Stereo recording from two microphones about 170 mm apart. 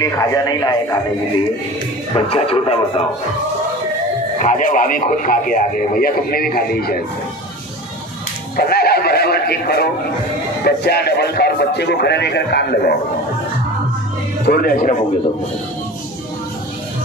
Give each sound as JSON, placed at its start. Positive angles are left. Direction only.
{"t": 0.0, "sound": "a man's voice", "side_deg": 20}
{"t": 2.1, "sound": "speech", "side_deg": 35}
{"t": 4.4, "sound": "speech", "side_deg": 50}
{"t": 8.5, "sound": "a man's voice", "side_deg": 65}
{"t": 14.4, "sound": "speech", "side_deg": 65}